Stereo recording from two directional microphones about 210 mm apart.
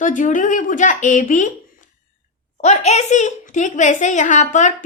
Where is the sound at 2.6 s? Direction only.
30° left (ahead or behind).